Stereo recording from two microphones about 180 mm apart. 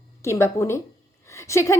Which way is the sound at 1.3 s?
15° left (ahead or behind).